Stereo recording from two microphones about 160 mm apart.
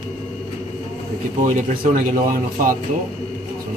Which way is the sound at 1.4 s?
55° right (ahead or behind).